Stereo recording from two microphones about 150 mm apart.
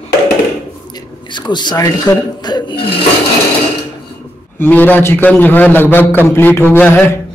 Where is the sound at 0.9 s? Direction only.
30° left (ahead or behind).